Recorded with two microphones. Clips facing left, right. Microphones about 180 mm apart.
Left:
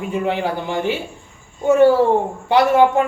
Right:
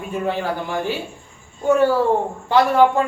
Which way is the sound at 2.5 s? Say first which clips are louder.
Left 2 dB; 15° left (ahead or behind).